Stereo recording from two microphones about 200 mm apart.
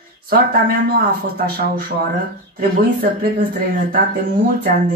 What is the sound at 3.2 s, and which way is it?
Speech, 45° right (ahead or behind).